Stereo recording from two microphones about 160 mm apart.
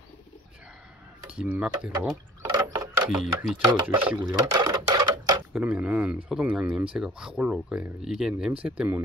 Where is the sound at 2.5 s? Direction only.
20° right (ahead or behind).